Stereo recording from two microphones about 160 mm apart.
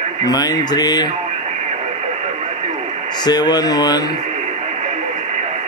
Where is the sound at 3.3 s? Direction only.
25° left (ahead or behind).